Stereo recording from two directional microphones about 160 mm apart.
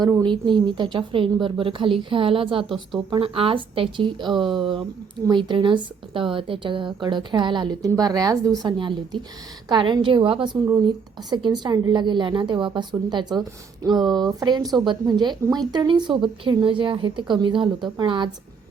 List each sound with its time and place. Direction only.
0.0 s a woman's voice: 25° right (ahead or behind)